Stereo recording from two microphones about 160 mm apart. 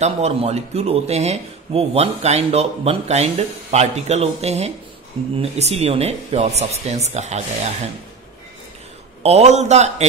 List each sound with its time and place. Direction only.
0.0 s speech: 40° right (ahead or behind)
9.2 s speech: 45° right (ahead or behind)